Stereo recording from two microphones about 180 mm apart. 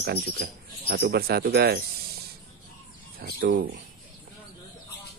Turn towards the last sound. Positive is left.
turn(degrees=-55)  # may be behind; listen again after turning